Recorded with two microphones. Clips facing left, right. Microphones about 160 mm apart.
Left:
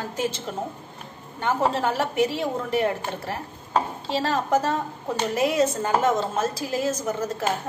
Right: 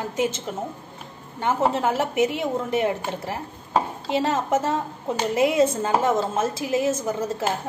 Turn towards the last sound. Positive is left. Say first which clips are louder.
# right 1 dB
turn(degrees=-25)  # may be behind; listen again after turning